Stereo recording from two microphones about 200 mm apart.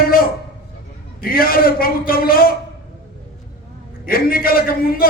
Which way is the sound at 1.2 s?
45° left (ahead or behind).